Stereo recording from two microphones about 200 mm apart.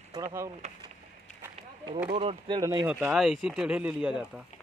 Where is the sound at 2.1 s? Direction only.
30° right (ahead or behind).